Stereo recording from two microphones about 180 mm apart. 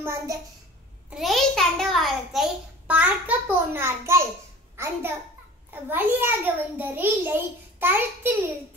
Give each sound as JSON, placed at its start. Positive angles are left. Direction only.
{"t": 0.0, "sound": "a child's voice", "side_deg": -15}
{"t": 1.1, "sound": "a child's voice", "side_deg": 0}